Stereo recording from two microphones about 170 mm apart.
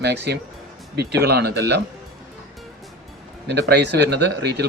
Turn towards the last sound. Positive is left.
turn(degrees=-75)  # may be behind; listen again after turning